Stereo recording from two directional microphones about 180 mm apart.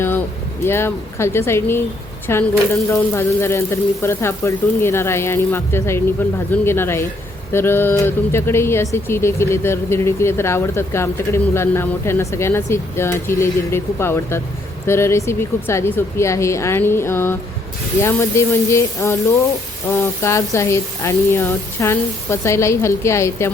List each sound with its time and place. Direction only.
0.6 s speech: 15° left (ahead or behind)